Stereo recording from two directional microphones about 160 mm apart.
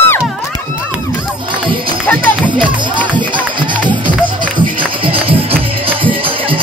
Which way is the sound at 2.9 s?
30° right (ahead or behind).